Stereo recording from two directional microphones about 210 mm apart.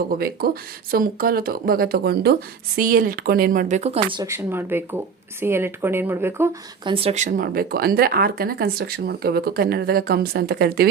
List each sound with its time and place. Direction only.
0.2 s speech: 45° right (ahead or behind); by 4.2 s 30° right (ahead or behind)
4.2 s speech: 10° right (ahead or behind)
6.8 s speech: 25° right (ahead or behind); by 10.8 s 45° right (ahead or behind)